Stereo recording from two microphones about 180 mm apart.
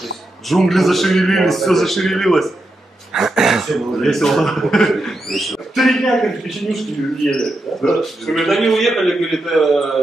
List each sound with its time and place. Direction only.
0.5 s speech: centre (ahead or behind)